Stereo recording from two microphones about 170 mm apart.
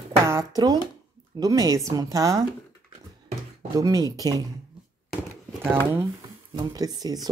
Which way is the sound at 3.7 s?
20° right (ahead or behind).